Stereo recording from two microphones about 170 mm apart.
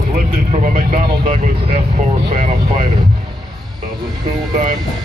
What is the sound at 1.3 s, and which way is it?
Speech, 35° right (ahead or behind).